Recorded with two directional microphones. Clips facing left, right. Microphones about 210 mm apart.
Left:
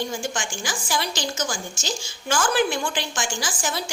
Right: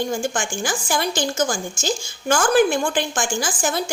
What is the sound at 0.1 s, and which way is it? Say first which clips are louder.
A woman's voice: right 5 dB; 50° right (ahead or behind).